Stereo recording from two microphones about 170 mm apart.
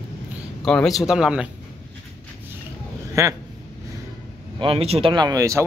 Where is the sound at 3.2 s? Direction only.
15° right (ahead or behind).